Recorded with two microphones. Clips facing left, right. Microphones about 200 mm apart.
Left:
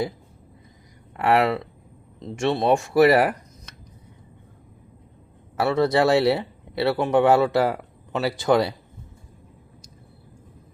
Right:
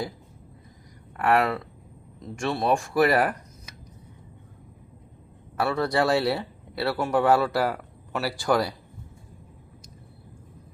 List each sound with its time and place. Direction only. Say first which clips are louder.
1.1 s speech: left 3 dB; 25° left (ahead or behind)
5.5 s speech: left 4 dB; 25° left (ahead or behind)